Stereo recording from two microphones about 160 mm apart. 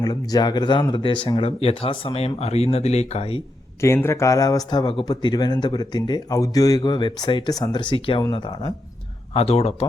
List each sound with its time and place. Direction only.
0.0 s speech: 25° left (ahead or behind)
3.8 s speech: 15° left (ahead or behind)
9.3 s speech: 40° left (ahead or behind)